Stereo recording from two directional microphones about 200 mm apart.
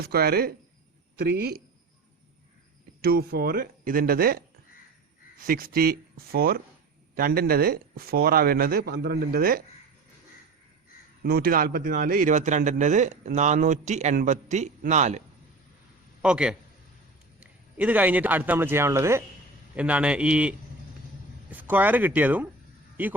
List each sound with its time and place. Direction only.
0.0 s speech: 50° right (ahead or behind)
3.0 s speech: 50° right (ahead or behind)
11.2 s a man's voice: 50° right (ahead or behind)
16.2 s a man's voice: 5° right (ahead or behind)